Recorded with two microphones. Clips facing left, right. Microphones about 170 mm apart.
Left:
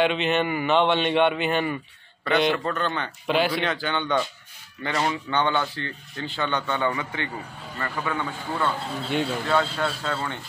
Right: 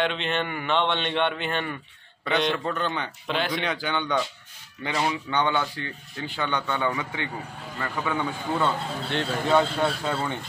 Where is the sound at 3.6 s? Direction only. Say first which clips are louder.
Left 1 dB; 15° right (ahead or behind).